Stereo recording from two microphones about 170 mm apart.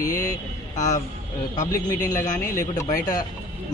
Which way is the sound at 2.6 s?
20° left (ahead or behind).